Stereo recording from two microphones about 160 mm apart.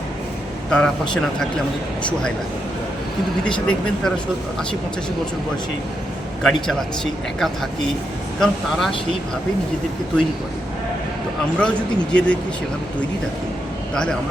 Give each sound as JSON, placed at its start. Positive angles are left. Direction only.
{"t": 0.7, "sound": "a man's voice", "side_deg": 5}
{"t": 3.4, "sound": "a man's voice", "side_deg": 5}
{"t": 6.4, "sound": "a man's voice", "side_deg": 0}
{"t": 11.5, "sound": "speech", "side_deg": 5}
{"t": 13.9, "sound": "a man's voice", "side_deg": 5}